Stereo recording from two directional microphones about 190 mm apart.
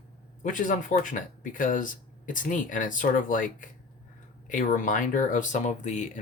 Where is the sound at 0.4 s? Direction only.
45° left (ahead or behind).